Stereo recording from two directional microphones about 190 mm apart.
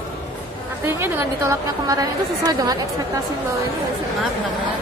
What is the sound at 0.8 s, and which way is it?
A woman's voice, 10° right (ahead or behind).